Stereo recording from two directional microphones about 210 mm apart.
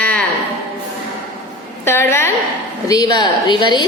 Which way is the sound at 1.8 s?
10° left (ahead or behind).